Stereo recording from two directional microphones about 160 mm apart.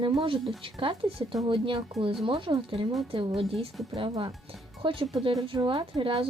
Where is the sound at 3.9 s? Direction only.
35° right (ahead or behind).